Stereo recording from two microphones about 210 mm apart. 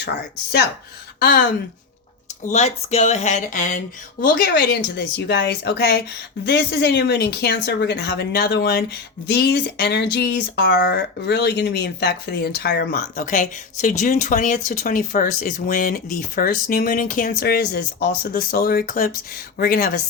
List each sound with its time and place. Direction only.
1.2 s speech: 45° left (ahead or behind)
2.5 s speech: 30° left (ahead or behind)